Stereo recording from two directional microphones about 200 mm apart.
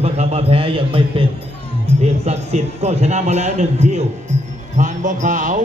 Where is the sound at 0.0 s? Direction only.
30° right (ahead or behind).